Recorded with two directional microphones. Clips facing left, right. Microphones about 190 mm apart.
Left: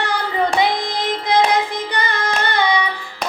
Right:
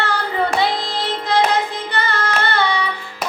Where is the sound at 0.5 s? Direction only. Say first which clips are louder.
Left 1 dB; 15° left (ahead or behind).